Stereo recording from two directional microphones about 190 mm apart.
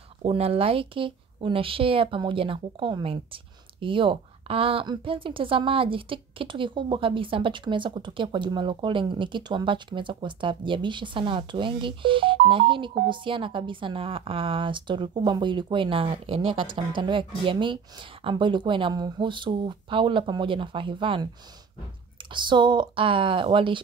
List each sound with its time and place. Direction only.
0.2 s a woman's voice: 30° right (ahead or behind)
22.3 s a woman's voice: 25° right (ahead or behind)